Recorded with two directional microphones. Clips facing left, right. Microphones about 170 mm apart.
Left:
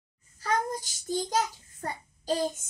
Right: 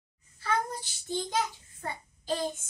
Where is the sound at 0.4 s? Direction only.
40° left (ahead or behind).